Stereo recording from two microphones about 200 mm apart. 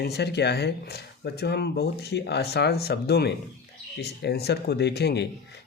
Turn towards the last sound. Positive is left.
turn(degrees=55)  # may be behind; listen again after turning